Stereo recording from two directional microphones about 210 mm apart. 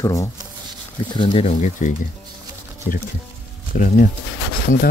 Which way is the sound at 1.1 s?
25° left (ahead or behind).